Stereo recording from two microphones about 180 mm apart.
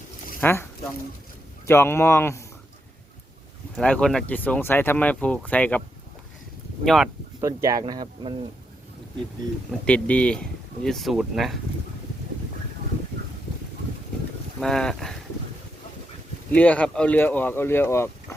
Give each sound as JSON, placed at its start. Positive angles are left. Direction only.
{"t": 0.3, "sound": "a sound", "side_deg": 10}
{"t": 1.6, "sound": "speech", "side_deg": 15}
{"t": 3.8, "sound": "speech", "side_deg": 5}
{"t": 6.8, "sound": "speech", "side_deg": 0}
{"t": 7.4, "sound": "speech", "side_deg": -20}
{"t": 9.8, "sound": "speech", "side_deg": 5}
{"t": 14.6, "sound": "speech", "side_deg": 5}
{"t": 16.5, "sound": "speech", "side_deg": 10}